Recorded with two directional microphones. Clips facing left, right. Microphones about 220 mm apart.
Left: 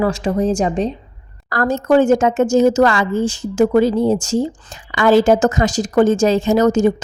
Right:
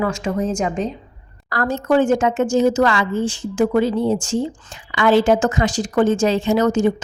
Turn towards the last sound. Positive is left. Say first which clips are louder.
# left 3 dB
turn(degrees=40)  # may be behind; listen again after turning